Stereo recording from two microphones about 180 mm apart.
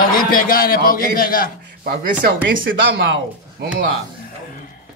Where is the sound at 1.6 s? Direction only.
55° right (ahead or behind).